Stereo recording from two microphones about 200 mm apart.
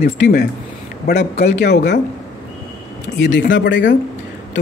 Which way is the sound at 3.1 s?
65° left (ahead or behind).